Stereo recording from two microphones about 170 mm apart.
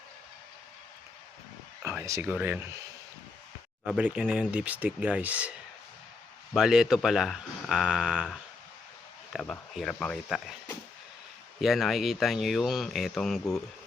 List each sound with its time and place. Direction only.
1.8 s speech: 15° right (ahead or behind)
3.8 s speech: 5° right (ahead or behind)
9.3 s speech: centre (ahead or behind)
11.6 s speech: centre (ahead or behind)